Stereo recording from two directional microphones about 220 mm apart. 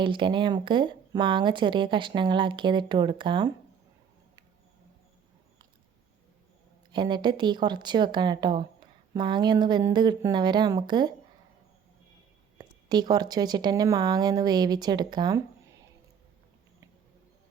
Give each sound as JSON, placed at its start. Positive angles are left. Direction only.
{"t": 0.0, "sound": "speech", "side_deg": -20}
{"t": 6.9, "sound": "speech", "side_deg": -20}
{"t": 12.5, "sound": "speech", "side_deg": -20}